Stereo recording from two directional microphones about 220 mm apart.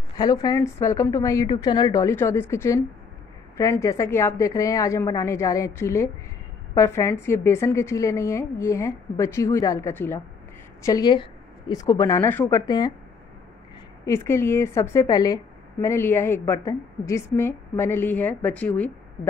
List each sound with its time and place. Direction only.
0.2 s a woman's voice: 15° left (ahead or behind)
14.0 s a woman's voice: 10° left (ahead or behind)